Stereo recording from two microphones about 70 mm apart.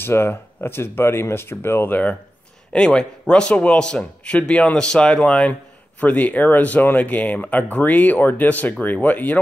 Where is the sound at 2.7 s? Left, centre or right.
Centre.